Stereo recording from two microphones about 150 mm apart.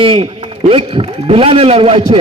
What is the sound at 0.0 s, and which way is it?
A man's voice, 35° right (ahead or behind).